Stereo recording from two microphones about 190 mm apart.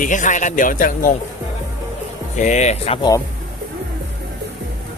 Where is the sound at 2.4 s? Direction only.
35° left (ahead or behind).